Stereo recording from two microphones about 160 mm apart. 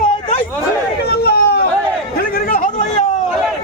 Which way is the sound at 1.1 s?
85° left.